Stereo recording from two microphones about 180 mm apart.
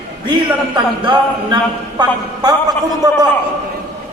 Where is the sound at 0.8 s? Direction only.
25° right (ahead or behind).